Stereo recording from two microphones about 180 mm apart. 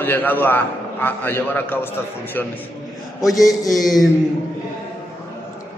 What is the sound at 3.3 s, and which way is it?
Mantra, 20° left (ahead or behind).